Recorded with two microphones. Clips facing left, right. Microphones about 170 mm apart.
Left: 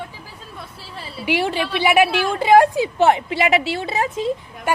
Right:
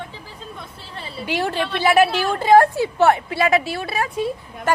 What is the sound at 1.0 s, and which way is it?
Speech, centre (ahead or behind).